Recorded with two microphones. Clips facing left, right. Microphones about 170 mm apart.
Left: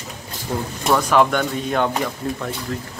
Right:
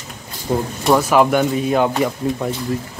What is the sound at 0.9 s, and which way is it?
Speech, 5° right (ahead or behind).